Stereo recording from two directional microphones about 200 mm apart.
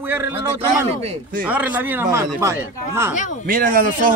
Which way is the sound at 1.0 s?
30° right (ahead or behind).